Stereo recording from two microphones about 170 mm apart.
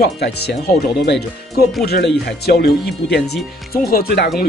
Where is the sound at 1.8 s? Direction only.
65° left (ahead or behind).